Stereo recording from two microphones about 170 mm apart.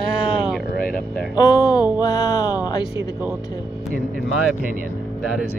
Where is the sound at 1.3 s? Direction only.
25° left (ahead or behind).